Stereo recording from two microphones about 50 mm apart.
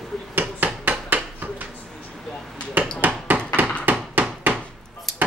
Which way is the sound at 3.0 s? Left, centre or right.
Right.